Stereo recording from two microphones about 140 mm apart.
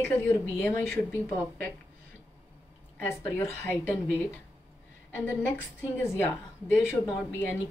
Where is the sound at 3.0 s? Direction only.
15° left (ahead or behind).